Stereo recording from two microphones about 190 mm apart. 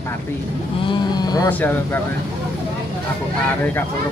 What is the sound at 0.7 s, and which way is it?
Livestock, 25° left (ahead or behind).